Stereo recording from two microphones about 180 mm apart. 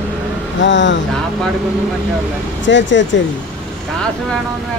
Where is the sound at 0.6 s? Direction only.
90° left.